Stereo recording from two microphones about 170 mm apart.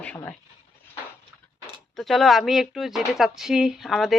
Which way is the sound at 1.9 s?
Centre (ahead or behind).